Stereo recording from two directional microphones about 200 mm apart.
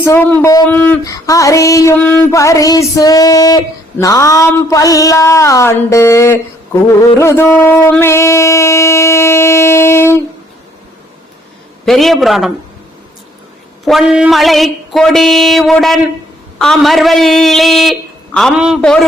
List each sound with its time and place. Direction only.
0.0 s a sound: 15° left (ahead or behind)
11.9 s mantra: centre (ahead or behind)
13.8 s mantra: centre (ahead or behind)